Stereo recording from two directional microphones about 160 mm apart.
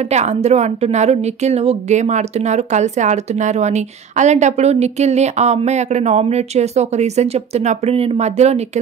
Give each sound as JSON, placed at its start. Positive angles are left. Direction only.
{"t": 0.1, "sound": "a woman's voice", "side_deg": -45}